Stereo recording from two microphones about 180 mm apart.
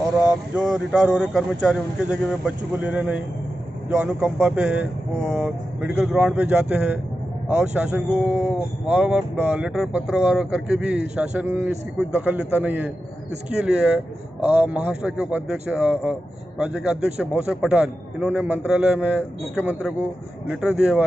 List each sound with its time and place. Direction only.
0.6 s speech: 5° right (ahead or behind)